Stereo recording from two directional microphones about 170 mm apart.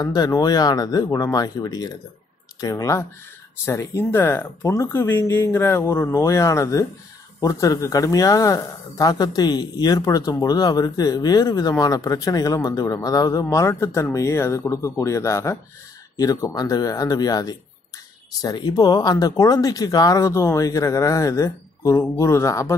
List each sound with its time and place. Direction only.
0.0 s speech: 20° left (ahead or behind)